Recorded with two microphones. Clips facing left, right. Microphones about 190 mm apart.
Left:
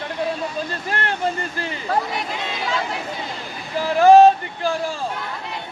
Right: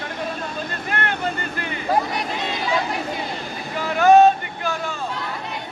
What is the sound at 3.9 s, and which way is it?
Speech, 35° left (ahead or behind).